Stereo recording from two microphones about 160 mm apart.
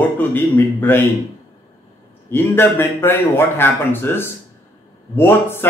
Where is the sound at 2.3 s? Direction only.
15° left (ahead or behind).